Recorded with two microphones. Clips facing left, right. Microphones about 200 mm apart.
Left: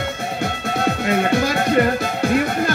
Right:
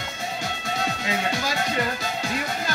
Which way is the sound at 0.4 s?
60° left (ahead or behind).